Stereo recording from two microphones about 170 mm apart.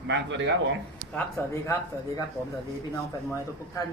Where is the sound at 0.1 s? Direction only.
90° right.